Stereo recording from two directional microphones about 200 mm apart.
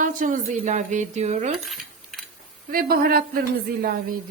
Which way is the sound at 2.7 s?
50° right (ahead or behind).